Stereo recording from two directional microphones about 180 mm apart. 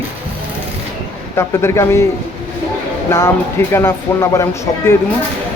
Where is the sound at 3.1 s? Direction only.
15° left (ahead or behind).